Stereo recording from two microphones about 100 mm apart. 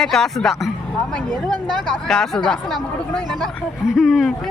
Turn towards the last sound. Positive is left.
turn(degrees=0)  # may be behind; listen again after turning